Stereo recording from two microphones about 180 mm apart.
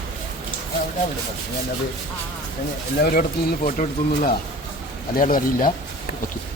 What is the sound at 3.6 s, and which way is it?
Speech, 45° left (ahead or behind).